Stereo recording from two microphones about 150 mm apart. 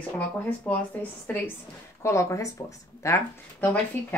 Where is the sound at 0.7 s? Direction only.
15° left (ahead or behind).